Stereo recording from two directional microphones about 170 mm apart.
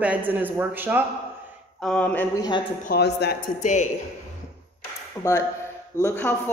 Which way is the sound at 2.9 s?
70° left (ahead or behind).